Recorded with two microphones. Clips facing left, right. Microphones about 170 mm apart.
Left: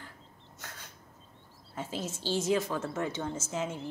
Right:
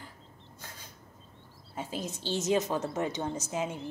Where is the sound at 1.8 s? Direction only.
15° right (ahead or behind).